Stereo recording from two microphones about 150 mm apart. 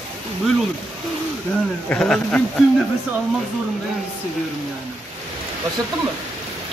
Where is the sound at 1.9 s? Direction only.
10° left (ahead or behind).